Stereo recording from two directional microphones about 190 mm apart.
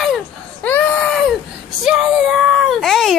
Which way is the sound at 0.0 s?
5° left (ahead or behind).